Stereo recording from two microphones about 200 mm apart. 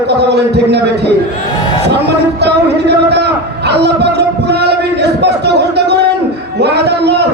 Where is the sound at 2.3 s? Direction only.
55° right (ahead or behind).